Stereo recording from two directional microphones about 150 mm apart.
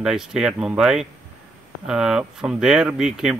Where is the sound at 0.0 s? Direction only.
5° right (ahead or behind).